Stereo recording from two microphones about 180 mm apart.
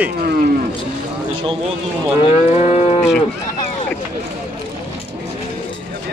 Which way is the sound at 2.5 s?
40° left (ahead or behind).